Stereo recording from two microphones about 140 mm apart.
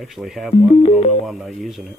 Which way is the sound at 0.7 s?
45° left (ahead or behind).